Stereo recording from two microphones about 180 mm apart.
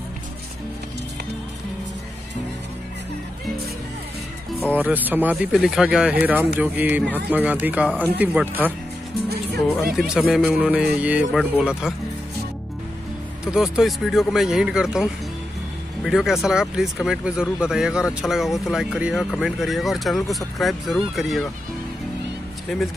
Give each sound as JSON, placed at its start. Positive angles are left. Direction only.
{"t": 4.7, "sound": "speech", "side_deg": -10}
{"t": 9.9, "sound": "speech", "side_deg": -5}
{"t": 13.5, "sound": "speech", "side_deg": -5}
{"t": 22.7, "sound": "speech", "side_deg": 0}